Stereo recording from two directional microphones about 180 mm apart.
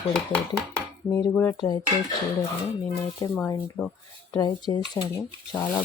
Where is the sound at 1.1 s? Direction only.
15° left (ahead or behind).